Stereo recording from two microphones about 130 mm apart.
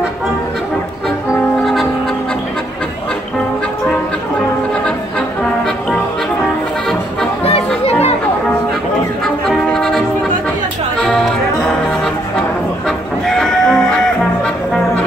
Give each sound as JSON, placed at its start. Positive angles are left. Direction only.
{"t": 1.6, "sound": "music", "side_deg": 0}
{"t": 7.4, "sound": "music", "side_deg": 50}
{"t": 9.5, "sound": "music", "side_deg": 5}
{"t": 12.8, "sound": "music", "side_deg": 5}